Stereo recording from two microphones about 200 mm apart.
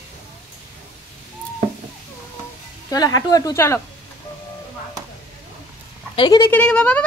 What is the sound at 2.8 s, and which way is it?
Speech, 20° left (ahead or behind).